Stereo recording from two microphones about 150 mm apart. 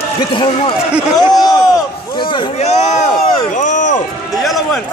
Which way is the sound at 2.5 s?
50° left (ahead or behind).